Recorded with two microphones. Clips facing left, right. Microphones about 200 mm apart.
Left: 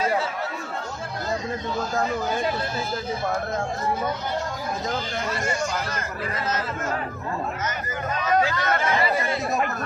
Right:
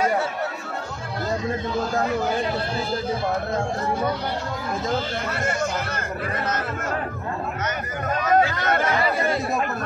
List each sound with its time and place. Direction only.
5.3 s speech: 60° right (ahead or behind)
7.6 s speech: 50° right (ahead or behind)